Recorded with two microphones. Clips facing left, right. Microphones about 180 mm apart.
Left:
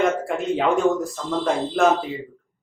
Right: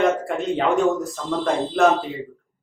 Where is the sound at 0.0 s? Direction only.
Centre (ahead or behind).